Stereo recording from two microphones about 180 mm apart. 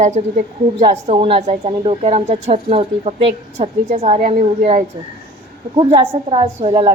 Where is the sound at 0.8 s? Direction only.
30° right (ahead or behind).